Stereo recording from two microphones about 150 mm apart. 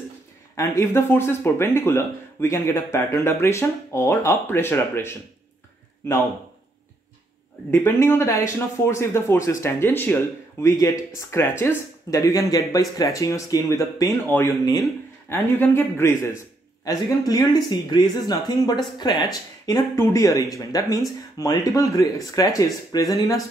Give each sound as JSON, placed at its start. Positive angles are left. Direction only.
{"t": 0.6, "sound": "speech", "side_deg": 20}
{"t": 7.7, "sound": "speech", "side_deg": 15}